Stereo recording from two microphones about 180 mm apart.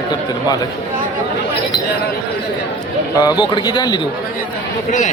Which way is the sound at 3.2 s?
25° left (ahead or behind).